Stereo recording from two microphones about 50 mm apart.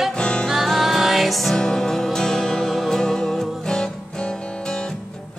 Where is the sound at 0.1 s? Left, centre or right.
Centre.